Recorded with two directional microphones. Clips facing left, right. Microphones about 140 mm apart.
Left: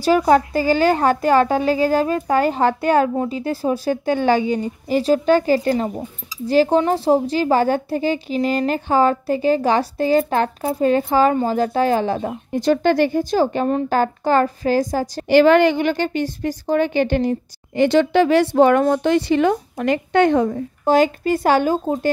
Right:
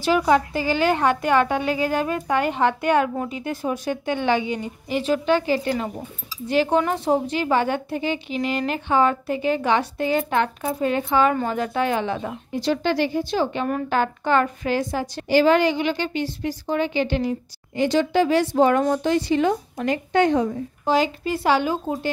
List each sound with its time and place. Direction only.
0.0 s a woman's voice: 40° left (ahead or behind)
15.2 s a woman's voice: 60° left (ahead or behind); by 22.1 s 45° left (ahead or behind)